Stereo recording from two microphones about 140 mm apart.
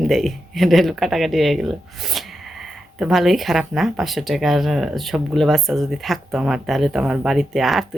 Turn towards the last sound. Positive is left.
turn(degrees=0)  # may be behind; listen again after turning